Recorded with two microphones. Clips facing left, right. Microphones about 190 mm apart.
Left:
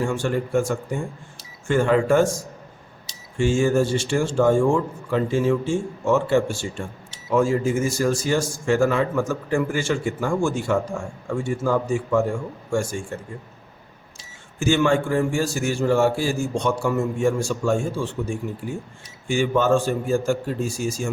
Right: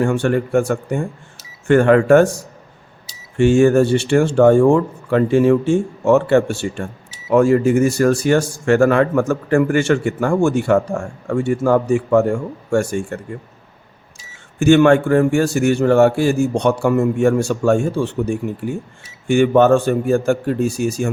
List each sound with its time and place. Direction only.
0.0 s speech: 65° right (ahead or behind)
14.6 s speech: 65° right (ahead or behind)